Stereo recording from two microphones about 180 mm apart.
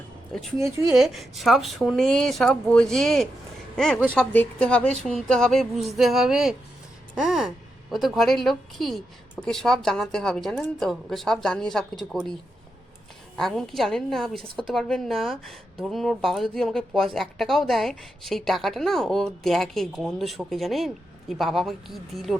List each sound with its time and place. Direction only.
0.6 s speech: 15° right (ahead or behind)
0.9 s speech: centre (ahead or behind)